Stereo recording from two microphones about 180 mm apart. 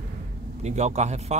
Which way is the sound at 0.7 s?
40° right (ahead or behind).